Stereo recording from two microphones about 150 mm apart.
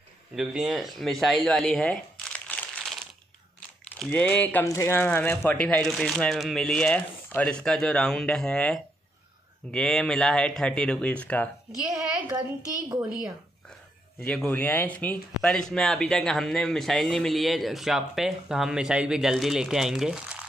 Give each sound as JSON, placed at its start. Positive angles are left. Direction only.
{"t": 0.4, "sound": "speech", "side_deg": 0}
{"t": 4.0, "sound": "speech", "side_deg": 10}
{"t": 11.9, "sound": "a child's voice", "side_deg": -20}
{"t": 14.2, "sound": "speech", "side_deg": 10}